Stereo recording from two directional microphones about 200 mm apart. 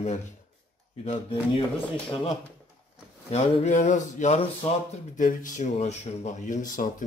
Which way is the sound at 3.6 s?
35° left (ahead or behind).